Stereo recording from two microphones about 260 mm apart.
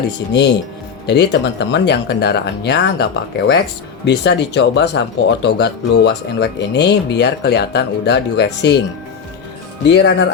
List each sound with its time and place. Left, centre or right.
1.0 s speech: left
9.8 s speech: left